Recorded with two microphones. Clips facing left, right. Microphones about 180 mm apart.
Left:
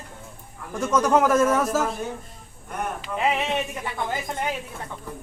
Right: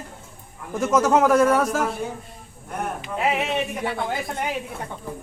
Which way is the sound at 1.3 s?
10° right (ahead or behind).